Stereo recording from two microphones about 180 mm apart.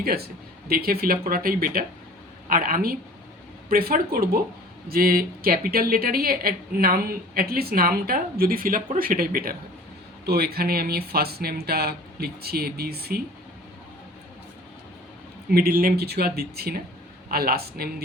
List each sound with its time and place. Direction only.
0.0 s speech: 60° right (ahead or behind)
15.4 s speech: 55° right (ahead or behind)